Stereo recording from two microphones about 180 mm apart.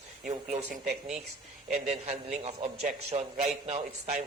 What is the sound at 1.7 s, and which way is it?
A man's voice, 40° right (ahead or behind).